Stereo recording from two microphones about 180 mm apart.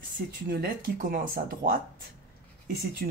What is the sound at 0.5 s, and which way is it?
Speech, 55° right (ahead or behind).